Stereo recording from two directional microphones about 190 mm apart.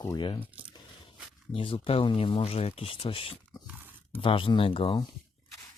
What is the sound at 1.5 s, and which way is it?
Speech, 30° left (ahead or behind).